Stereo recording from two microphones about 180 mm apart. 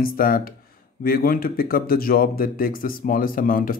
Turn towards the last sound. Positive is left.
turn(degrees=50)  # may be behind; listen again after turning